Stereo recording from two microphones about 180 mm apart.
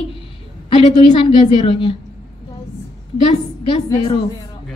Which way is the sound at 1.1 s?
30° left (ahead or behind).